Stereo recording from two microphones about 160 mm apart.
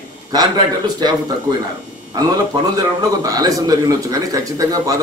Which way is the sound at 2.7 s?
20° right (ahead or behind).